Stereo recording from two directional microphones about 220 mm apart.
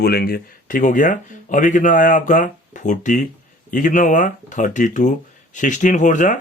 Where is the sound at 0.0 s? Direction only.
45° left (ahead or behind).